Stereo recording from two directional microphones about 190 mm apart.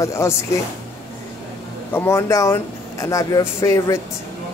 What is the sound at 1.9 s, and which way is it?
Speech, 15° left (ahead or behind).